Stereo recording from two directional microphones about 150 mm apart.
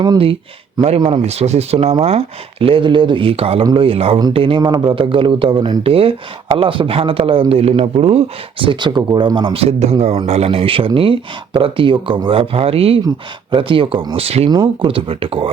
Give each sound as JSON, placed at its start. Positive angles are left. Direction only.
{"t": 0.0, "sound": "speech", "side_deg": -35}
{"t": 1.2, "sound": "speech", "side_deg": -45}
{"t": 14.5, "sound": "speech", "side_deg": -30}